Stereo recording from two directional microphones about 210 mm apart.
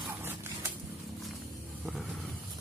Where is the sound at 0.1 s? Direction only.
10° right (ahead or behind).